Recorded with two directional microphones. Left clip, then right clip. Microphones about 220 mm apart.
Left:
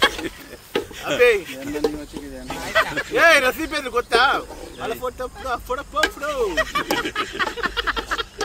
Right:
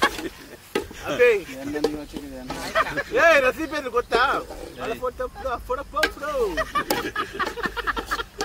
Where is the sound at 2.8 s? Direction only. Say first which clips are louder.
Right 1 dB; centre (ahead or behind).